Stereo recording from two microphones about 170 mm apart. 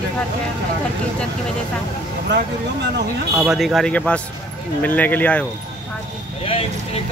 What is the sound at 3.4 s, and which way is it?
Speech, centre (ahead or behind).